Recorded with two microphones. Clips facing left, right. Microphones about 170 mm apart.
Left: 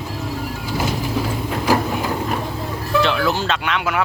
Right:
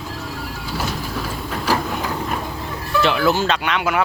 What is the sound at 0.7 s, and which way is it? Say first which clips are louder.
Printer: left 4 dB; 20° left (ahead or behind).